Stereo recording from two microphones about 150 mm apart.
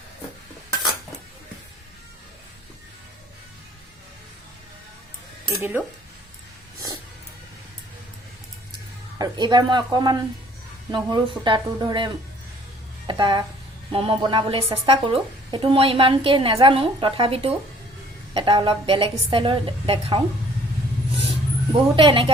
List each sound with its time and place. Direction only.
5.5 s speech: 15° right (ahead or behind)
6.7 s music: 25° right (ahead or behind)
9.1 s a woman's voice: 30° right (ahead or behind)
21.9 s a woman's voice: 35° right (ahead or behind)